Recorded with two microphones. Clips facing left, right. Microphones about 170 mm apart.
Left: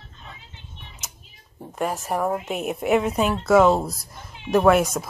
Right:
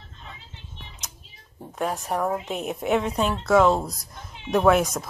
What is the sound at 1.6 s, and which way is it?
Speech, centre (ahead or behind).